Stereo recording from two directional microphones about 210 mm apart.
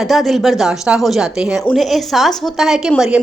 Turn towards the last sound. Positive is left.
turn(degrees=-5)  # may be behind; listen again after turning